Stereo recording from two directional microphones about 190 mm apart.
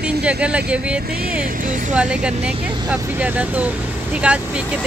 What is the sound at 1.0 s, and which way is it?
Vehicle, 50° right (ahead or behind).